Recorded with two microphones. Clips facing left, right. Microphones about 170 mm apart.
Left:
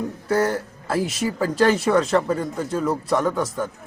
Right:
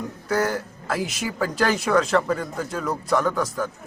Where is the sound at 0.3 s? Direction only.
30° left (ahead or behind).